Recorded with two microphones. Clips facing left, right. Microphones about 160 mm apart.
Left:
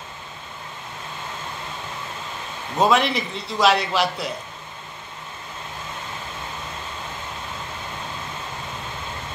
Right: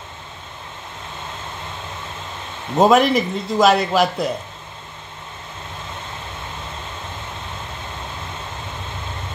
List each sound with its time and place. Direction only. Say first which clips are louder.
2.8 s a man's voice: right 5 dB; 45° right (ahead or behind)